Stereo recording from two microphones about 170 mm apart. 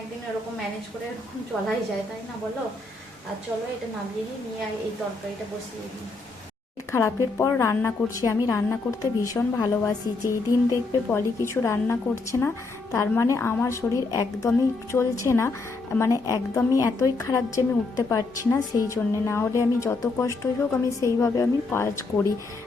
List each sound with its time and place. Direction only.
6.9 s a woman's voice: 15° left (ahead or behind)